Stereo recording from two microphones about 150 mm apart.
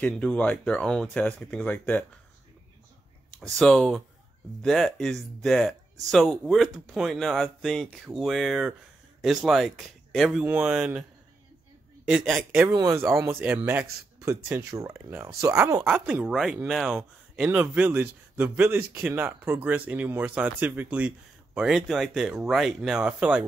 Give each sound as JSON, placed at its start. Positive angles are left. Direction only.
{"t": 0.0, "sound": "speech", "side_deg": 5}
{"t": 3.3, "sound": "speech", "side_deg": 0}
{"t": 12.1, "sound": "speech", "side_deg": -5}
{"t": 12.6, "sound": "speech", "side_deg": -20}